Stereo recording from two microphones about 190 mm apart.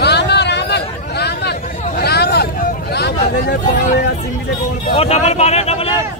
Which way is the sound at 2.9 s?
60° left (ahead or behind).